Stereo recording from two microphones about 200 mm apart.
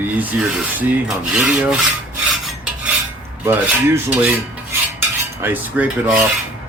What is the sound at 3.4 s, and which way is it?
Filing, 10° right (ahead or behind).